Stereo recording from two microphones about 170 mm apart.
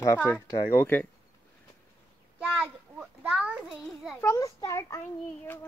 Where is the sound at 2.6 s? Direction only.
5° right (ahead or behind).